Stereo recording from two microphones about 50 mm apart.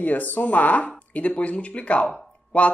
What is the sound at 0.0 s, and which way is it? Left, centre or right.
Speech, left.